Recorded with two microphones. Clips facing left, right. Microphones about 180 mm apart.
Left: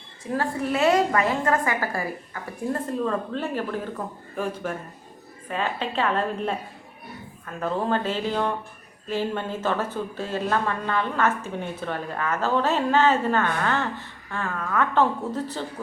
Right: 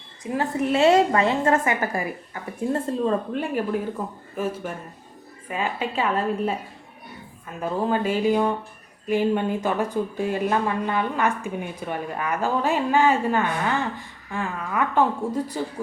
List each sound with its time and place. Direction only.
0.3 s a woman's voice: 20° right (ahead or behind)
3.3 s speech: 10° right (ahead or behind)